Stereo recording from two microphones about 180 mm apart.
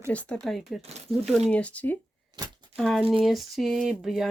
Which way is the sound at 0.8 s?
35° right (ahead or behind).